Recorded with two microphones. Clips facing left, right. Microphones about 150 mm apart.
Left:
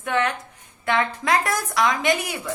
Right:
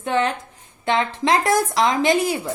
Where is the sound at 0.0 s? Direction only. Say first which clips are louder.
Right 2 dB; 30° right (ahead or behind).